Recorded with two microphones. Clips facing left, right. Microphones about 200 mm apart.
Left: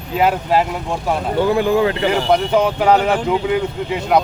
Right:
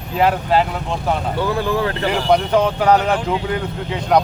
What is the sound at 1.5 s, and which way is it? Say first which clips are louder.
Speech: left 5 dB; 20° left (ahead or behind).